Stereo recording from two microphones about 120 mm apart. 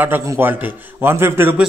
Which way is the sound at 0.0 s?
20° right (ahead or behind).